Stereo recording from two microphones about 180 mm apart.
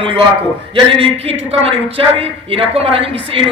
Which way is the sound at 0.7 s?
30° right (ahead or behind).